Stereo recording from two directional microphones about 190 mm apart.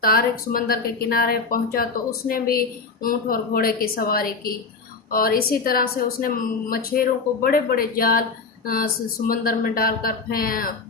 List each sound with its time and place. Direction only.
0.0 s a woman's voice: 50° left (ahead or behind)